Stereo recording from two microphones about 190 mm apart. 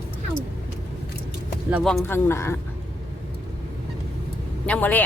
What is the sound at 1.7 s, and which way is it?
Speech, centre (ahead or behind).